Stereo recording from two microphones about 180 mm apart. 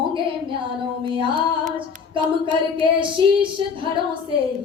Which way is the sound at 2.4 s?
25° right (ahead or behind).